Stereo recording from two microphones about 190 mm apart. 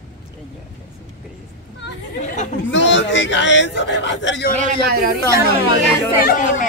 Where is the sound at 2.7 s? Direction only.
75° left (ahead or behind).